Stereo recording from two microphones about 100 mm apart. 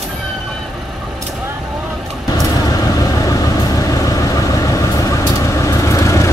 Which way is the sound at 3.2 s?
35° left (ahead or behind).